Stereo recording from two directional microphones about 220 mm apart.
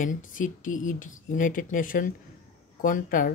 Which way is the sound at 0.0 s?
35° left (ahead or behind).